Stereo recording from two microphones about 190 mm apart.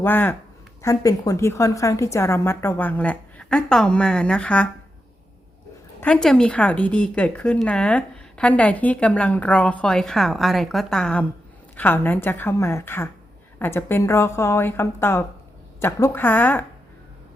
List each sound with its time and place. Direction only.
0.0 s a woman's voice: 10° left (ahead or behind)
6.0 s a woman's voice: 5° left (ahead or behind)